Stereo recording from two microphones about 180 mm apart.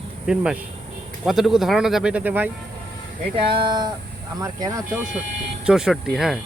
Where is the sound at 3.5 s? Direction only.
25° right (ahead or behind).